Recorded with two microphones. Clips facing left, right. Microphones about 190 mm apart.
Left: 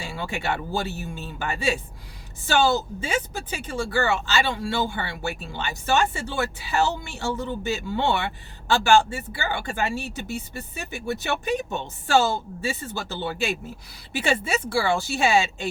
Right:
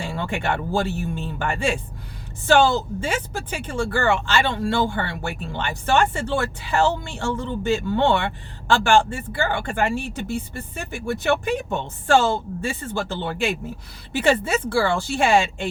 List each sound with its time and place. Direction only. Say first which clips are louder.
0.3 s speech: right 2 dB; 55° right (ahead or behind)
14.2 s speech: right 5 dB; 55° right (ahead or behind)